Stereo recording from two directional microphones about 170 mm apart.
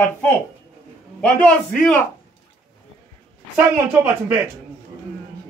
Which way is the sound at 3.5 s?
10° right (ahead or behind).